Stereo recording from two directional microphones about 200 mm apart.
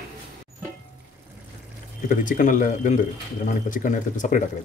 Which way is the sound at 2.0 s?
40° left (ahead or behind).